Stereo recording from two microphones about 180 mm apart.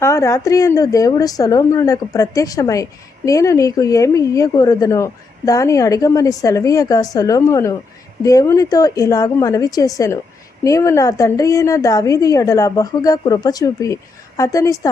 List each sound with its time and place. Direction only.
0.0 s a woman's voice: 15° left (ahead or behind)